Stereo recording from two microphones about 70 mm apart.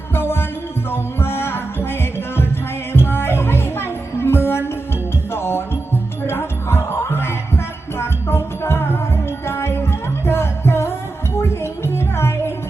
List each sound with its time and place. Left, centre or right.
0.1 s music: left